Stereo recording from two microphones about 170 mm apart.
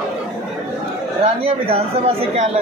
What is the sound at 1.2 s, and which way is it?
Speech, 35° right (ahead or behind).